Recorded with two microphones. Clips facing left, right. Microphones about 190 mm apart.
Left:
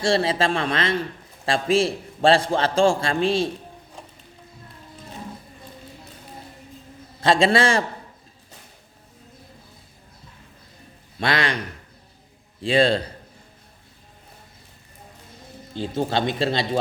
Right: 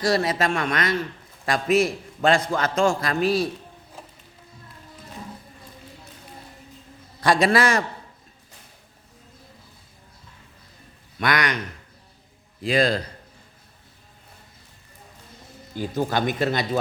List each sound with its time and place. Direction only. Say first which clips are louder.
0.0 s a man's voice: left 1 dB; 30° left (ahead or behind)
7.2 s a man's voice: left 1 dB; 25° left (ahead or behind)
11.2 s a man's voice: even; 30° left (ahead or behind)
12.6 s a man's voice: left 2 dB; 30° left (ahead or behind)
15.7 s a man's voice: left 1 dB; 25° left (ahead or behind)